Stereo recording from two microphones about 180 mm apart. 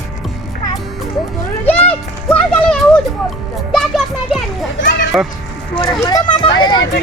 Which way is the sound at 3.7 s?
Centre (ahead or behind).